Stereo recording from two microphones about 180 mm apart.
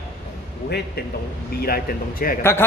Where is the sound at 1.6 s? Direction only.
55° left (ahead or behind).